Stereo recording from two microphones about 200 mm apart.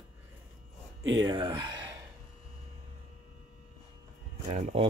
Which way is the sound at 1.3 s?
20° right (ahead or behind).